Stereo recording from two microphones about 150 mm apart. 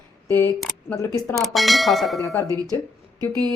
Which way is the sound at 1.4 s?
Centre (ahead or behind).